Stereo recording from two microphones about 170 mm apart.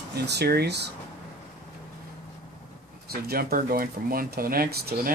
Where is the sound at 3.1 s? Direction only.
65° right (ahead or behind).